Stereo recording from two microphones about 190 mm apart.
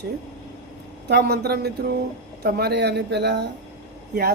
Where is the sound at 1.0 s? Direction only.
60° right (ahead or behind).